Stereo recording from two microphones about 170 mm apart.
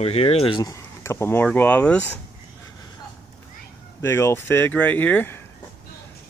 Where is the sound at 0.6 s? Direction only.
20° left (ahead or behind).